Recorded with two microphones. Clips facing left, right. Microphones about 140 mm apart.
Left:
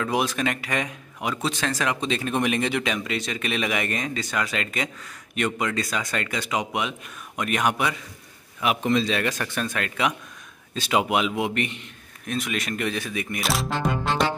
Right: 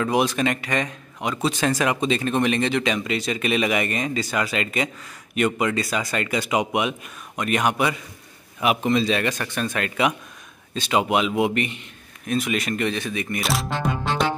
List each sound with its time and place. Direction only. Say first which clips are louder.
0.0 s speech: right 3 dB; centre (ahead or behind)
1.6 s speech: right 5 dB; 10° right (ahead or behind)
7.3 s speech: right 2 dB; centre (ahead or behind)